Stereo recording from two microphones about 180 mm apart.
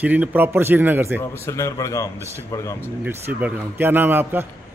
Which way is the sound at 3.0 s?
10° right (ahead or behind).